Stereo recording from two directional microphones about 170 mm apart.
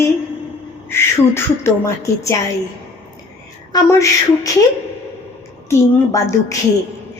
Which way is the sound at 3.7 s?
20° left (ahead or behind).